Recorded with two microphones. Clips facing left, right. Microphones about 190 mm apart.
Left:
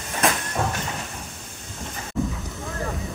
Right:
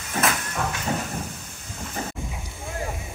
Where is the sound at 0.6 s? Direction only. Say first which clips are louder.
Left 3 dB; 30° left (ahead or behind).